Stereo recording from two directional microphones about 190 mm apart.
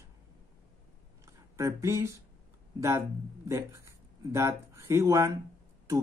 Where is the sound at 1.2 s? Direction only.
15° right (ahead or behind).